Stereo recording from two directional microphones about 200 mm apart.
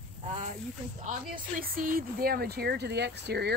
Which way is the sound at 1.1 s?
45° right (ahead or behind).